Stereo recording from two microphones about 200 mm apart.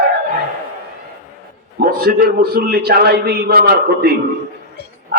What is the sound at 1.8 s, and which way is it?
A man's voice, 50° right (ahead or behind).